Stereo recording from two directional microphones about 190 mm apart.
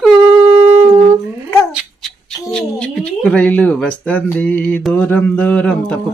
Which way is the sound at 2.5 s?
5° left (ahead or behind).